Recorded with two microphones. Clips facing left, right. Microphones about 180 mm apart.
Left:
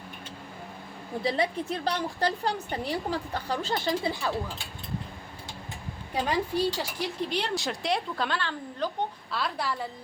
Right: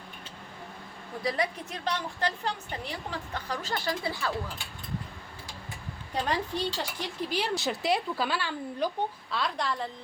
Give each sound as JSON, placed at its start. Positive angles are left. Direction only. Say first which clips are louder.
{"t": 1.2, "sound": "a woman's voice", "louder": "left 3 dB", "side_deg": 25}
{"t": 6.1, "sound": "a woman's voice", "louder": "left 3 dB", "side_deg": 10}
{"t": 7.3, "sound": "a woman's voice", "louder": "even", "side_deg": 0}
{"t": 9.3, "sound": "a woman's voice", "louder": "right 1 dB", "side_deg": 5}